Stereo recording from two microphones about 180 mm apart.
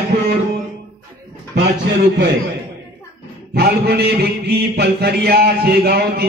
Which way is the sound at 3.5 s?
60° right (ahead or behind).